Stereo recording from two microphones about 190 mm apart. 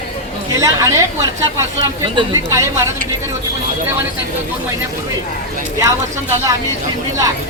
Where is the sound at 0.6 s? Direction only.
20° right (ahead or behind).